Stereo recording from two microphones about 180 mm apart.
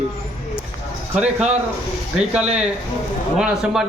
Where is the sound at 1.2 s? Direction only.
40° right (ahead or behind).